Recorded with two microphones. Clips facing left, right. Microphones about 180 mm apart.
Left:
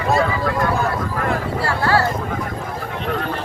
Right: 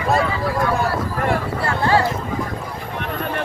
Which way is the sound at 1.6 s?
20° right (ahead or behind).